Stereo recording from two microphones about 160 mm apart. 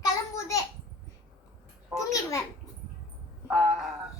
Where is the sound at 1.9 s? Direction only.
20° left (ahead or behind).